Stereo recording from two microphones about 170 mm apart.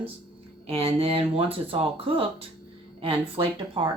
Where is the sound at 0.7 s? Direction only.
35° right (ahead or behind).